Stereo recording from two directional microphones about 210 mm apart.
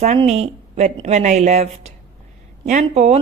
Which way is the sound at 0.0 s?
30° right (ahead or behind).